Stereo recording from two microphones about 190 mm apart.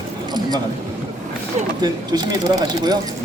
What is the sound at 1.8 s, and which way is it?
Speech, 20° right (ahead or behind).